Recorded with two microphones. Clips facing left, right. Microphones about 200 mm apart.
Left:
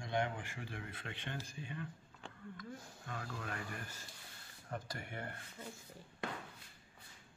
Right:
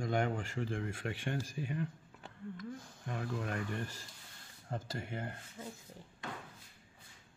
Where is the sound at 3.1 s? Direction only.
25° right (ahead or behind).